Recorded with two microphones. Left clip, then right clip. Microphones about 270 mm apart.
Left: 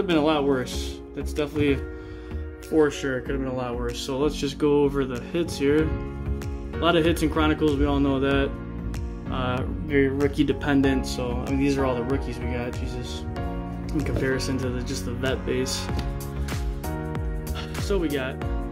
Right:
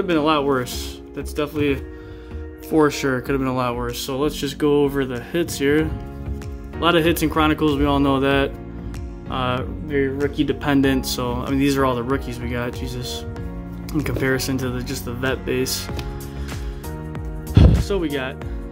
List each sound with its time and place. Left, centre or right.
0.0 s speech: centre
2.8 s speech: right
4.0 s speech: centre
9.8 s speech: centre
17.6 s music: centre